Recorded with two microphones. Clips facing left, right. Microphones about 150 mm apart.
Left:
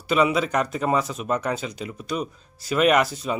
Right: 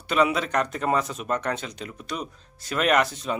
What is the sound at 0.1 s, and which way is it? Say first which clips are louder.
Speech: left 2 dB; 5° left (ahead or behind).